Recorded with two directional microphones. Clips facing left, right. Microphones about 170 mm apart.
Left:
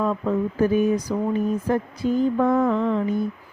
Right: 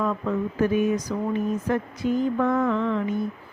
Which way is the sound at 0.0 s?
35° left (ahead or behind).